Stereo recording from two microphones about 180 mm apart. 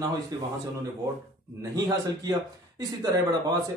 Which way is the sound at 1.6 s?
20° right (ahead or behind).